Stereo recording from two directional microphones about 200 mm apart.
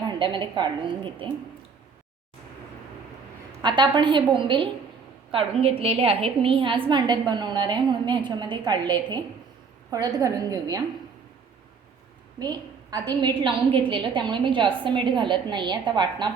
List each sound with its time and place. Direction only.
0.1 s a woman's voice: 25° right (ahead or behind)
3.6 s a woman's voice: 25° right (ahead or behind)
12.4 s a woman's voice: 20° right (ahead or behind)